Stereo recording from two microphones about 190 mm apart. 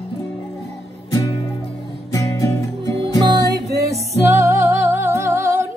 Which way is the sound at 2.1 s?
15° left (ahead or behind).